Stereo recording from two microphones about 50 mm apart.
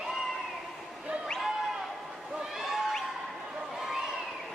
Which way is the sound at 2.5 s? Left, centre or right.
Centre.